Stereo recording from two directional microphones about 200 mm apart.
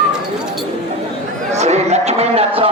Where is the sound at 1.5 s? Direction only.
35° right (ahead or behind).